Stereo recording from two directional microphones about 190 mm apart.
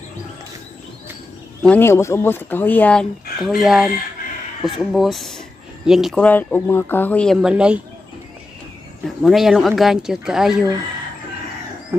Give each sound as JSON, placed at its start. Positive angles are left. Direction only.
{"t": 1.6, "sound": "speech", "side_deg": 10}
{"t": 9.0, "sound": "speech", "side_deg": 0}
{"t": 11.9, "sound": "a sound", "side_deg": -15}